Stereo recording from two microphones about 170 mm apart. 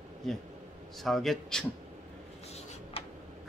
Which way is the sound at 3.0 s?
35° left (ahead or behind).